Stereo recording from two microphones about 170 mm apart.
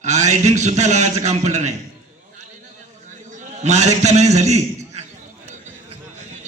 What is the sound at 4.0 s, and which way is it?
A man's voice, 40° right (ahead or behind).